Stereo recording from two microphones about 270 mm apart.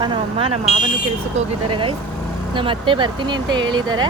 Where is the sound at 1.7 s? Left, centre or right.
Centre.